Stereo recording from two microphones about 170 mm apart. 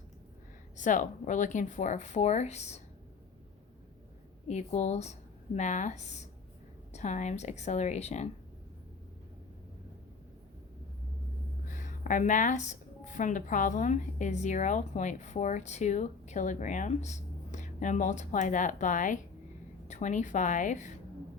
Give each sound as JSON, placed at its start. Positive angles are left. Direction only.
{"t": 0.8, "sound": "speech", "side_deg": 50}
{"t": 4.4, "sound": "a woman's voice", "side_deg": 40}
{"t": 11.7, "sound": "a woman's voice", "side_deg": 50}